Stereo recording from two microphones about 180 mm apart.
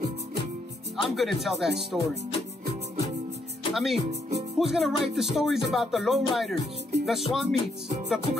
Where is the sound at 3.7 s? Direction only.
Centre (ahead or behind).